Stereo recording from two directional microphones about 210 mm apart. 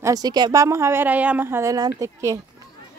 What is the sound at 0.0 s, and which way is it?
Speech, 20° right (ahead or behind).